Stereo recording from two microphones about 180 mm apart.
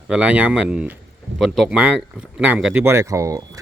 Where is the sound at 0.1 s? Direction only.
5° right (ahead or behind).